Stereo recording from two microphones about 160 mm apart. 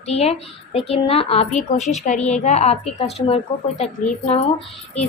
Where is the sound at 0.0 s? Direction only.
40° left (ahead or behind).